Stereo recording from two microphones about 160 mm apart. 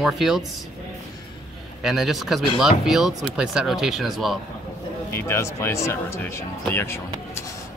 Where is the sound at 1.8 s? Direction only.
Centre (ahead or behind).